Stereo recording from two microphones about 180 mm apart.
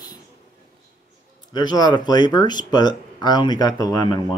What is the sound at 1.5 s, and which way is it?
Speech, 25° left (ahead or behind).